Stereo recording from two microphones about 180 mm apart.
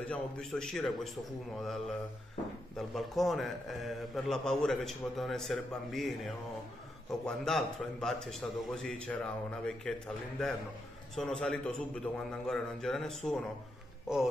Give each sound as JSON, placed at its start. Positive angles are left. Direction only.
{"t": 0.1, "sound": "a man's voice", "side_deg": 0}
{"t": 2.9, "sound": "a man's voice", "side_deg": 0}